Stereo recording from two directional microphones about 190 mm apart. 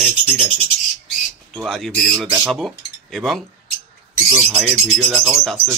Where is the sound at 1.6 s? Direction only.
Centre (ahead or behind).